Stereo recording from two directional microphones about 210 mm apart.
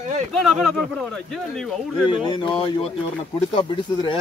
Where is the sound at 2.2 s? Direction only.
20° left (ahead or behind).